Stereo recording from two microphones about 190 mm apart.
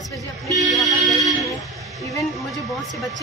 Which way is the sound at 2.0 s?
15° left (ahead or behind).